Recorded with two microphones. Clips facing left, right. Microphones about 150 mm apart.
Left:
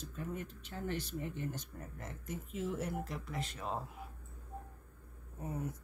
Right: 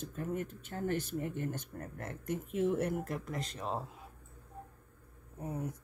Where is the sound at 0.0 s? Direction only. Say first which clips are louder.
Right 5 dB; 50° right (ahead or behind).